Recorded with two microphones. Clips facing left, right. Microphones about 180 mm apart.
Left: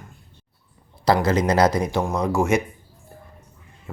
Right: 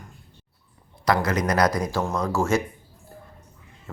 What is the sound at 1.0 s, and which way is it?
Speech, 30° left (ahead or behind).